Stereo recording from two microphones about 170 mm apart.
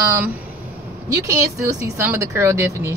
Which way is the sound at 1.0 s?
20° right (ahead or behind).